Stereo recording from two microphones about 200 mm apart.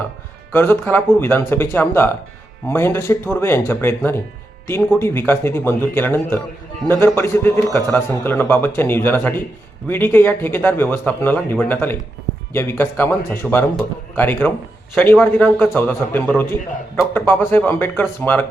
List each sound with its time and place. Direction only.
0.5 s speech: 10° left (ahead or behind)